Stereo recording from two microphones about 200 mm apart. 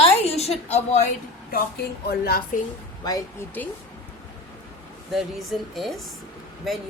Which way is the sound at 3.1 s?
15° left (ahead or behind).